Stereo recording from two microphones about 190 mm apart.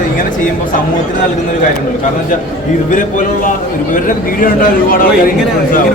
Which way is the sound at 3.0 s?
45° left (ahead or behind).